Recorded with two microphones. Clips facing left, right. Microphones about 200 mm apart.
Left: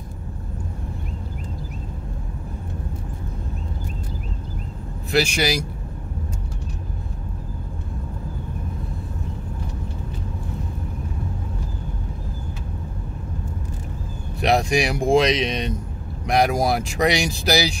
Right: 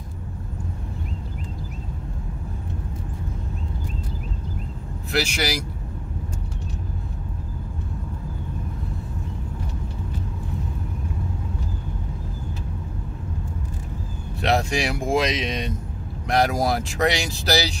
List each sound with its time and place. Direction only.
5.1 s speech: 15° left (ahead or behind)
14.4 s speech: 15° left (ahead or behind)